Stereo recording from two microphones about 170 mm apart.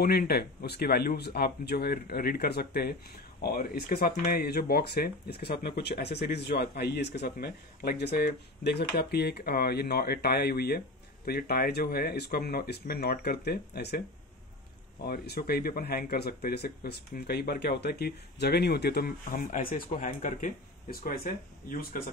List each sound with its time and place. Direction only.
0.0 s speech: 65° left (ahead or behind)
15.0 s speech: 65° left (ahead or behind)